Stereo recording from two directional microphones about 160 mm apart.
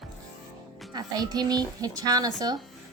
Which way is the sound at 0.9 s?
25° right (ahead or behind).